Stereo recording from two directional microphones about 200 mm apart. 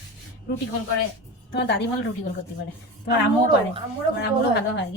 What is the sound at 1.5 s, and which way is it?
Speech, 60° left (ahead or behind).